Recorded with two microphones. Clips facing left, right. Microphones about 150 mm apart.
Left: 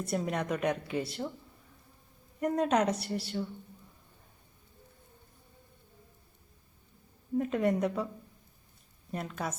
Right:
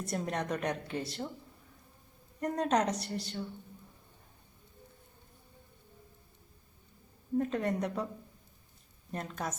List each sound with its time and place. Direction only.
0.0 s a woman's voice: 5° left (ahead or behind)
2.4 s a woman's voice: 5° left (ahead or behind)
7.3 s a woman's voice: 10° left (ahead or behind)
9.1 s a woman's voice: 5° left (ahead or behind)